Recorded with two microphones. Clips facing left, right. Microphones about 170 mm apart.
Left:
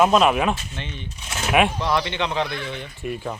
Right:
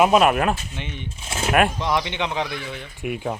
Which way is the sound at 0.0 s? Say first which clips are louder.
Right 1 dB; 5° right (ahead or behind).